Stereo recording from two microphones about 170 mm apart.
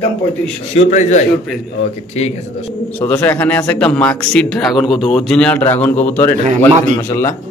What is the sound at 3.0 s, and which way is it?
A man's voice, 10° left (ahead or behind).